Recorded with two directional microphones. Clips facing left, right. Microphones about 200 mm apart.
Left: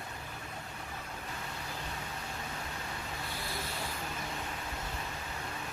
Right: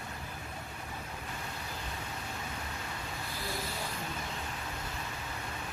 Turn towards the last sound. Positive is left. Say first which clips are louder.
# right 2 dB
turn(degrees=0)  # may be behind; listen again after turning